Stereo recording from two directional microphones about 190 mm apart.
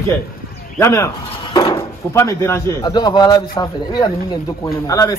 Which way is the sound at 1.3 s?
25° left (ahead or behind).